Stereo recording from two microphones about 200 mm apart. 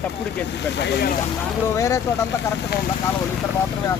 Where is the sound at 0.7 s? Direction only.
60° left (ahead or behind).